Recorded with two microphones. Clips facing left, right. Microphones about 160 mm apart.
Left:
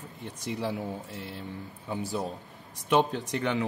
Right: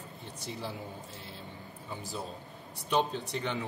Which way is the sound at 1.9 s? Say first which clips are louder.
Left 8 dB; 75° left (ahead or behind).